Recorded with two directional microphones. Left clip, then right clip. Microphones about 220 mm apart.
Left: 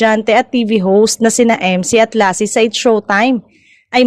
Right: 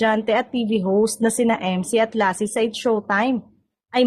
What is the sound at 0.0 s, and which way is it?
A woman's voice, 30° left (ahead or behind).